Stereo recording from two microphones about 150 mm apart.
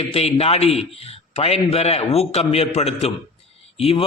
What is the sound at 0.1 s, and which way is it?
A man's voice, 45° left (ahead or behind).